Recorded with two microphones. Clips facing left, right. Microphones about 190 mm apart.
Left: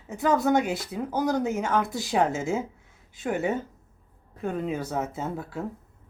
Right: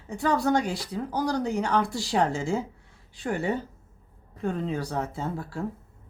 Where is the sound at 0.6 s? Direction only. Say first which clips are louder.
Left 2 dB; 20° left (ahead or behind).